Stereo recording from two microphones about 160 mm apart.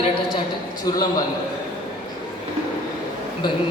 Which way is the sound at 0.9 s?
25° left (ahead or behind).